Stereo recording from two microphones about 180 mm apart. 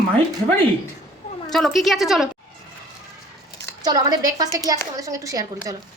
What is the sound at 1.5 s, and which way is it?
Speech, centre (ahead or behind).